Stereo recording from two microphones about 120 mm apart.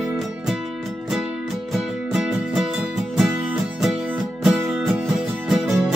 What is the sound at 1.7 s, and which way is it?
Music, centre (ahead or behind).